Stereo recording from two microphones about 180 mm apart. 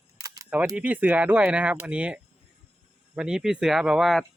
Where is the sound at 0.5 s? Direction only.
20° right (ahead or behind); by 4.3 s centre (ahead or behind).